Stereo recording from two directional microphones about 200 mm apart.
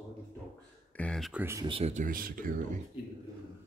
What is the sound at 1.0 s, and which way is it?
Speech, 5° left (ahead or behind).